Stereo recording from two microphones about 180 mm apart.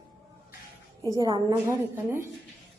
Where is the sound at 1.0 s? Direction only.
20° left (ahead or behind).